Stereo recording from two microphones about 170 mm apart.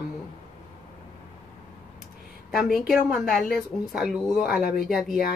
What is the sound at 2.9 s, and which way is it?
A woman's voice, centre (ahead or behind).